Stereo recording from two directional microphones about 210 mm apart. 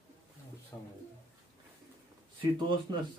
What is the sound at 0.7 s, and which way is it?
Speech, 15° left (ahead or behind).